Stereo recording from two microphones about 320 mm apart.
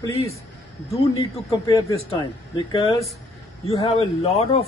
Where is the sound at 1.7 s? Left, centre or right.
Centre.